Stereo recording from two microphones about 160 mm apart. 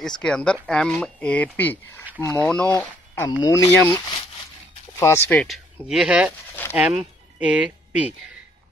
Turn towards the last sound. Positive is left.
turn(degrees=-10)  # may be behind; listen again after turning